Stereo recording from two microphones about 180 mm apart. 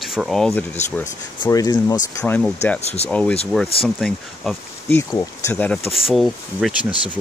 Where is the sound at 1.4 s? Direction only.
20° left (ahead or behind).